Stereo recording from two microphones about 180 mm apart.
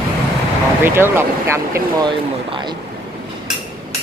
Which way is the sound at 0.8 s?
15° right (ahead or behind).